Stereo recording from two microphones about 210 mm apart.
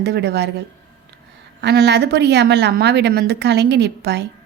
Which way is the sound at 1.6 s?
50° right (ahead or behind).